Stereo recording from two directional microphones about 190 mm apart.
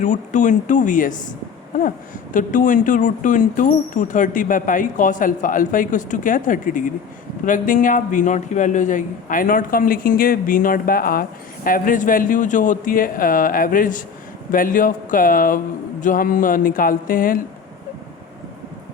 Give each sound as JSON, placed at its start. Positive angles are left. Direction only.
{"t": 0.0, "sound": "speech", "side_deg": 40}
{"t": 2.3, "sound": "speech", "side_deg": 45}